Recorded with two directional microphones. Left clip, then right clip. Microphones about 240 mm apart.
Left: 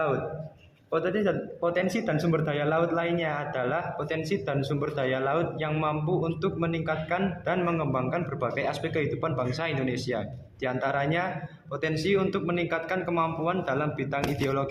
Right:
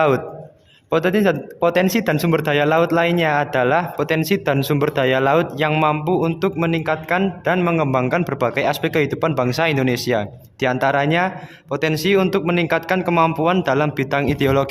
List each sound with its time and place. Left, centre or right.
0.9 s speech: right